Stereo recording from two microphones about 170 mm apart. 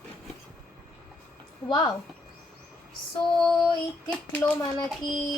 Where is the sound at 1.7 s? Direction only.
25° left (ahead or behind).